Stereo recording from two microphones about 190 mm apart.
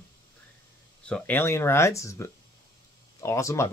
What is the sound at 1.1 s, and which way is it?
Speech, 5° left (ahead or behind).